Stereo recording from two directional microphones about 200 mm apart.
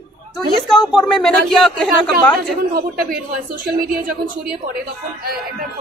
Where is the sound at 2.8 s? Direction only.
45° right (ahead or behind).